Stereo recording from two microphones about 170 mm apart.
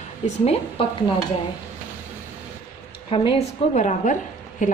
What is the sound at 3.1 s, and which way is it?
A woman's voice, 35° left (ahead or behind).